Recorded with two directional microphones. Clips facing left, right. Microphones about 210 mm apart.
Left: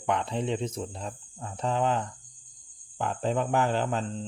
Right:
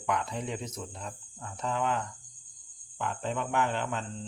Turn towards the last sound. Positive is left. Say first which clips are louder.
# left 5 dB
turn(degrees=30)  # may be behind; listen again after turning